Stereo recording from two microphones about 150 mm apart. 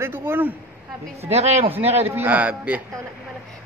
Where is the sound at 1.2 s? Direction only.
45° right (ahead or behind).